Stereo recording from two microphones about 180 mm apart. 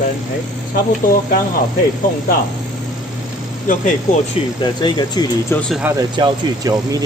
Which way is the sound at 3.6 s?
45° left (ahead or behind).